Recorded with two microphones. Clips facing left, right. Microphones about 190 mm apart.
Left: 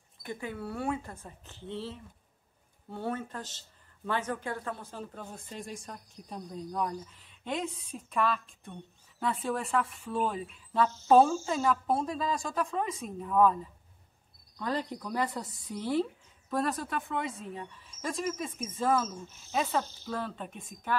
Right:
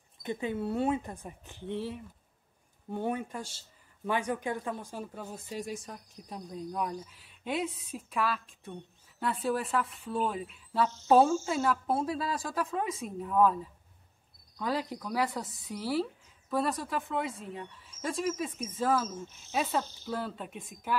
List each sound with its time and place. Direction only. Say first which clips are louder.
0.2 s speech: right 5 dB; 20° right (ahead or behind); by 13.6 s 5° right (ahead or behind)
14.6 s speech: right 1 dB; 10° right (ahead or behind)